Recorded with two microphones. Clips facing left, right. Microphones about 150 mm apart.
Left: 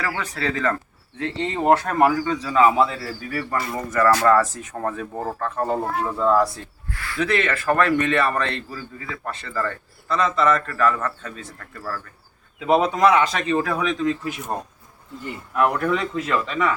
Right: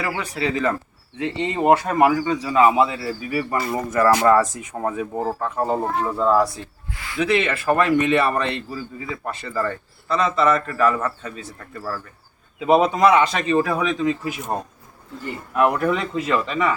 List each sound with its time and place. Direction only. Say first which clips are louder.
0.0 s a man's voice: right 2 dB; 10° right (ahead or behind)
6.0 s speech: even; centre (ahead or behind)
6.9 s a man's voice: left 2 dB; 15° right (ahead or behind)
7.2 s a man's voice: right 2 dB; 5° right (ahead or behind)